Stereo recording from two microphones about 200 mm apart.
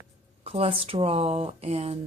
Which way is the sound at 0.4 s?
30° right (ahead or behind).